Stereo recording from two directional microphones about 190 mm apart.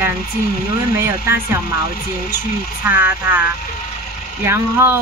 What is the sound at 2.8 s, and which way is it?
Speech, 10° right (ahead or behind).